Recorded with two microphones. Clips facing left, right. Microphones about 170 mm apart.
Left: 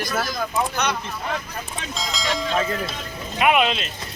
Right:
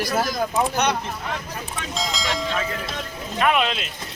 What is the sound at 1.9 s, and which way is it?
Speech, centre (ahead or behind).